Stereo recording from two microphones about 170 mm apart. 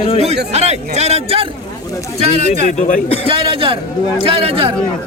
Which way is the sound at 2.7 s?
50° left (ahead or behind).